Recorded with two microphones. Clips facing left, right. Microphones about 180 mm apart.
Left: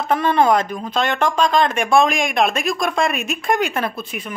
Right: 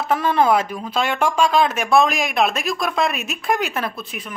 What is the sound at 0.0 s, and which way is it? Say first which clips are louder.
Speech: left 1 dB; 5° right (ahead or behind).